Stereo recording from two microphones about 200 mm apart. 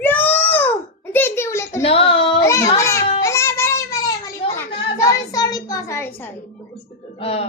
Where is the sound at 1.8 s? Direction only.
30° left (ahead or behind).